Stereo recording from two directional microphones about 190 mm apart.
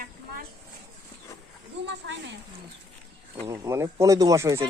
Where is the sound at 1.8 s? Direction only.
70° right (ahead or behind).